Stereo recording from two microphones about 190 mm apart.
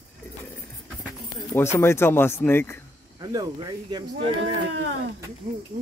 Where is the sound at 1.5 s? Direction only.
15° left (ahead or behind).